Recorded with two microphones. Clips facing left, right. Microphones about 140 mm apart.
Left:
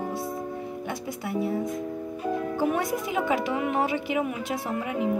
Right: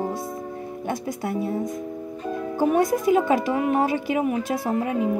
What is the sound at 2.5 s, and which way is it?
Speech, 40° right (ahead or behind).